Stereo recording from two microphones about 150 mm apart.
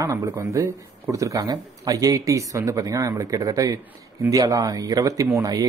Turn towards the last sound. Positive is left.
turn(degrees=-25)  # may be behind; listen again after turning